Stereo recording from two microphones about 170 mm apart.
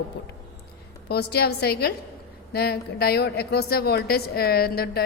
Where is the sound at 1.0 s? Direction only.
70° left (ahead or behind).